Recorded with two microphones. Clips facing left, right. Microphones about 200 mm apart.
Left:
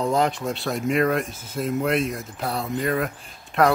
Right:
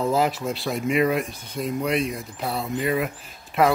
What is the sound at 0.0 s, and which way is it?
Speech, 5° right (ahead or behind).